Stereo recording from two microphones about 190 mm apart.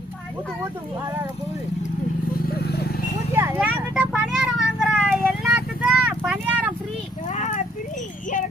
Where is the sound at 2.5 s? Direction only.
55° left (ahead or behind).